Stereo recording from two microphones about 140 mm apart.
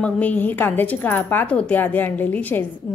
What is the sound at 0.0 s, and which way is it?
A woman's voice, 10° left (ahead or behind).